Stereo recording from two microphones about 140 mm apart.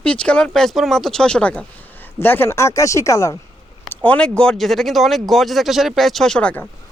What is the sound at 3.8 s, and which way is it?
Speech, 10° left (ahead or behind).